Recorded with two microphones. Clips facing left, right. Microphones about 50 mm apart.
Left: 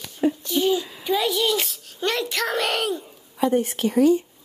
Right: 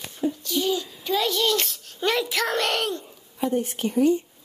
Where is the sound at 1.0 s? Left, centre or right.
Centre.